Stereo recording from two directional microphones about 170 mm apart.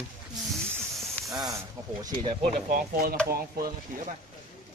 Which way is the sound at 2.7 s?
60° right (ahead or behind).